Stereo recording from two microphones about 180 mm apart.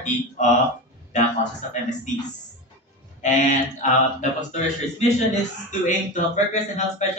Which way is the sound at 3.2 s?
40° left (ahead or behind).